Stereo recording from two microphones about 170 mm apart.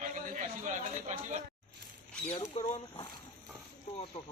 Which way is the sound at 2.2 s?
40° left (ahead or behind).